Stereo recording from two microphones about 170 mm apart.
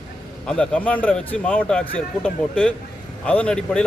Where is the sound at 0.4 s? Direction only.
5° left (ahead or behind).